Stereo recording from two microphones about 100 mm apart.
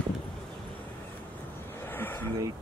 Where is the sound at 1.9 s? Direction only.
20° left (ahead or behind).